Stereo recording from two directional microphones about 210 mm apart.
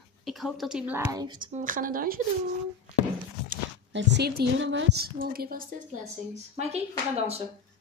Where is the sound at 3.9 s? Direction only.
55° right (ahead or behind).